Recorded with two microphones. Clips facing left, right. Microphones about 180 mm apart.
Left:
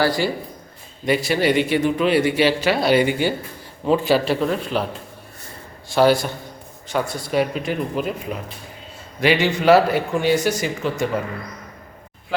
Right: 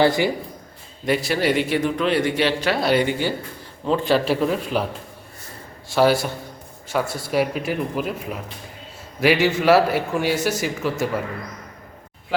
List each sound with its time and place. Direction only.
0.0 s a man's voice: 20° right (ahead or behind)
1.0 s a man's voice: centre (ahead or behind)
5.9 s a man's voice: 5° right (ahead or behind)